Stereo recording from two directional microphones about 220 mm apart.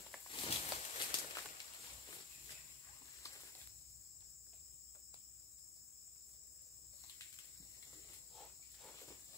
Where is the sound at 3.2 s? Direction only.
15° left (ahead or behind).